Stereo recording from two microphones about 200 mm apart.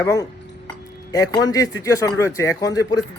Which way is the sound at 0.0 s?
15° left (ahead or behind).